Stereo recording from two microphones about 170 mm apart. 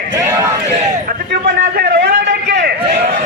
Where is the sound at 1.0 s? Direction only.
60° right (ahead or behind); by 2.7 s 80° right.